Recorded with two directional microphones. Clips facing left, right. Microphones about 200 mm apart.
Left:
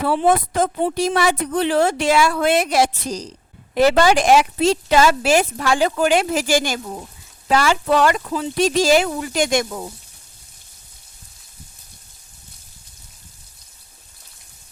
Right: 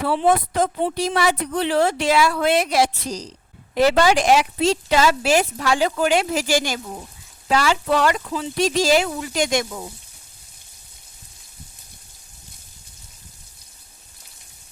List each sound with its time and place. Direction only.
0.0 s a woman's voice: 50° left (ahead or behind)